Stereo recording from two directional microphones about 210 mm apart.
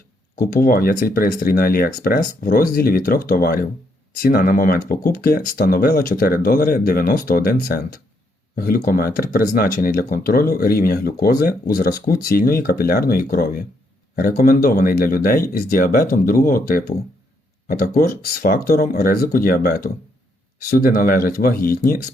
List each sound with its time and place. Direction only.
0.3 s speech: 45° left (ahead or behind)